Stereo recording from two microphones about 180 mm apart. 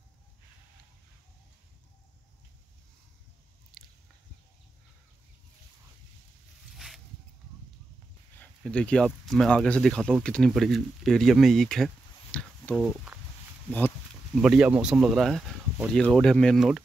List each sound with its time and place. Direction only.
3.7 s biting: centre (ahead or behind)
8.4 s speech: 5° left (ahead or behind)
14.3 s speech: centre (ahead or behind)